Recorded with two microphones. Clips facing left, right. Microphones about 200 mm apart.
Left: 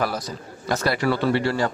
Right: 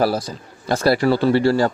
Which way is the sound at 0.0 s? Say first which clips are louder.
Right 6 dB; 30° right (ahead or behind).